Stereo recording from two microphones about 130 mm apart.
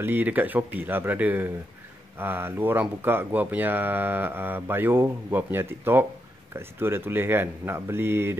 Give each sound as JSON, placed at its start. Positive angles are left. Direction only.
{"t": 0.0, "sound": "speech", "side_deg": -15}